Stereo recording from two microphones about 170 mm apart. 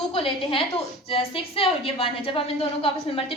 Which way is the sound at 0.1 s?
30° left (ahead or behind).